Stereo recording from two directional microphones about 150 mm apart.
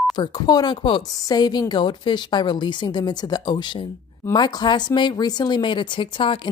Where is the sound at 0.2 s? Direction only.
30° left (ahead or behind).